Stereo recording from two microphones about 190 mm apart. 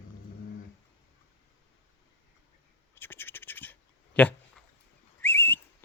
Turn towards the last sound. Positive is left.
turn(degrees=10)  # may be behind; listen again after turning